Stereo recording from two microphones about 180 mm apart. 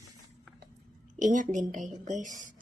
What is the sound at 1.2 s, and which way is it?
A woman's voice, 45° right (ahead or behind).